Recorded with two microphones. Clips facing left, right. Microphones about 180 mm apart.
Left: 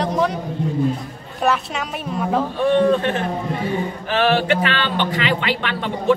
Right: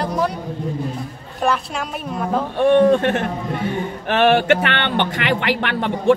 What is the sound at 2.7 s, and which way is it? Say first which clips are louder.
A man's voice: right 3 dB; 50° right (ahead or behind).